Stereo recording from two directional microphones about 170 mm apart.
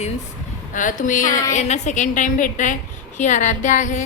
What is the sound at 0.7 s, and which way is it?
A woman's voice, 50° left (ahead or behind).